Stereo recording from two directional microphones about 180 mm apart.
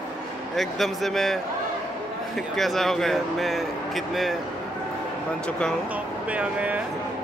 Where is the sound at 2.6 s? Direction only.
Centre (ahead or behind).